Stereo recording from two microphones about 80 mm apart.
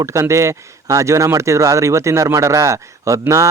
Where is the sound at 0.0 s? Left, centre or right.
Right.